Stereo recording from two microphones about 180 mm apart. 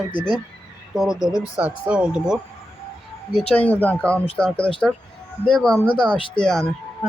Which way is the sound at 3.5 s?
10° left (ahead or behind).